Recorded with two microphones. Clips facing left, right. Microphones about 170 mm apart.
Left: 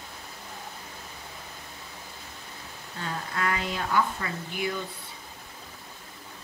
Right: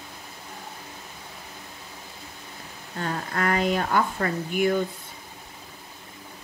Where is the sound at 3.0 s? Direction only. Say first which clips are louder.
Right 4 dB; 50° right (ahead or behind).